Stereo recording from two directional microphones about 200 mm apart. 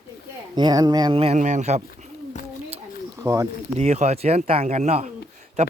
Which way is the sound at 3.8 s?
35° right (ahead or behind).